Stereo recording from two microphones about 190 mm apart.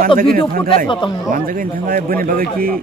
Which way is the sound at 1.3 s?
45° right (ahead or behind).